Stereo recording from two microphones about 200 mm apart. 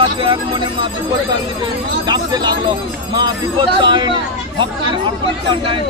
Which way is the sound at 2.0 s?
20° right (ahead or behind).